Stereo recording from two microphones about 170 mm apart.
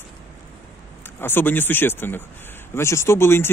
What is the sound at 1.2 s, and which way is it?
Speech, 10° left (ahead or behind).